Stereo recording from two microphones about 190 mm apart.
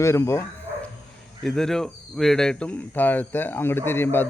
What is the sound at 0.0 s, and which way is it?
Speech, 15° left (ahead or behind).